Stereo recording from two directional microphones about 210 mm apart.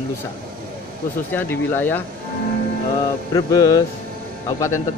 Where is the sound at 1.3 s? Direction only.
10° left (ahead or behind).